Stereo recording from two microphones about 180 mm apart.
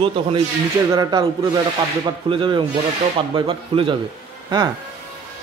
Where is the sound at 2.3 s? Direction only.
25° right (ahead or behind).